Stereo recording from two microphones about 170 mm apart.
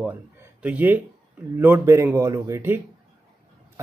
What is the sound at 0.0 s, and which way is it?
A man's voice, 5° right (ahead or behind).